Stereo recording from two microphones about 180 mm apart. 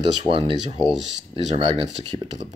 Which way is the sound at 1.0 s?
35° right (ahead or behind).